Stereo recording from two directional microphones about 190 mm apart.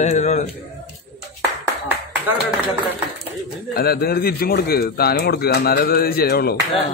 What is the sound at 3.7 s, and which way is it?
Speech, 55° left (ahead or behind).